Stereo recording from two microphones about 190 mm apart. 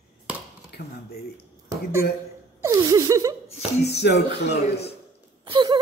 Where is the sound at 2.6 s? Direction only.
15° right (ahead or behind).